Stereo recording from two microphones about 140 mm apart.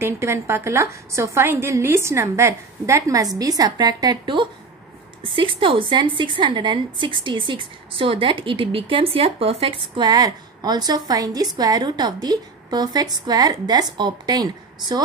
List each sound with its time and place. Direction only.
0.0 s a woman's voice: 20° right (ahead or behind)